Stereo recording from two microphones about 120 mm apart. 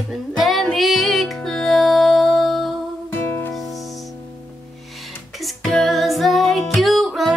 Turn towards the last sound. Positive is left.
turn(degrees=0)  # may be behind; listen again after turning